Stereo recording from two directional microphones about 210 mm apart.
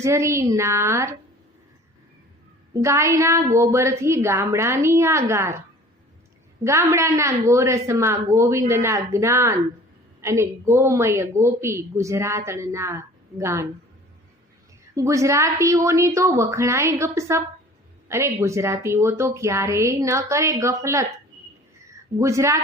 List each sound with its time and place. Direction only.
0.0 s a woman's voice: 15° right (ahead or behind)
2.8 s a woman's voice: 15° right (ahead or behind)
6.7 s a woman's voice: 15° right (ahead or behind)
14.9 s a woman's voice: 15° right (ahead or behind)